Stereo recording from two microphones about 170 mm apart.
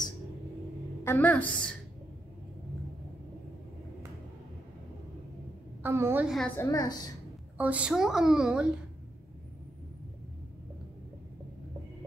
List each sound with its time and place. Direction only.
1.0 s a woman's voice: 10° left (ahead or behind)
5.8 s a woman's voice: 15° right (ahead or behind)
6.2 s a woman's voice: centre (ahead or behind)
6.5 s a woman's voice: 15° left (ahead or behind)
7.5 s a woman's voice: 10° right (ahead or behind)